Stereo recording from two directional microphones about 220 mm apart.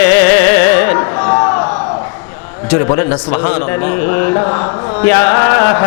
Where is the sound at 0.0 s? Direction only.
15° left (ahead or behind).